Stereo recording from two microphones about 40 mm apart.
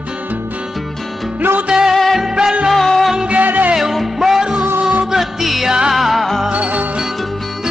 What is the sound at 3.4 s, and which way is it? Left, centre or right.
Music, right.